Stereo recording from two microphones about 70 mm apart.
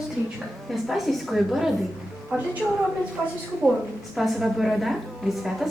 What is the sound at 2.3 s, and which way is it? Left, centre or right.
Speech, right.